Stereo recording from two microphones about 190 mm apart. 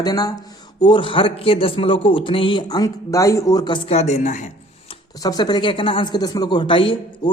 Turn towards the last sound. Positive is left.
turn(degrees=25)  # may be behind; listen again after turning